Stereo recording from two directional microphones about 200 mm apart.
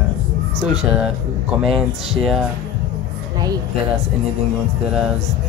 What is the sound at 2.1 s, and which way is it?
Speech, centre (ahead or behind).